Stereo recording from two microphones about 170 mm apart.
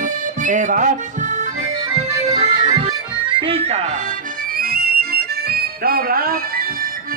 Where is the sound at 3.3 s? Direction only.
30° right (ahead or behind).